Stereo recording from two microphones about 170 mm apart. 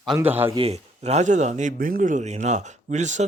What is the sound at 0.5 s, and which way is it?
A man's voice, 35° right (ahead or behind).